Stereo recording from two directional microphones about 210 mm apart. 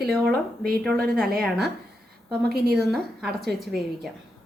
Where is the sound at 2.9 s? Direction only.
Centre (ahead or behind).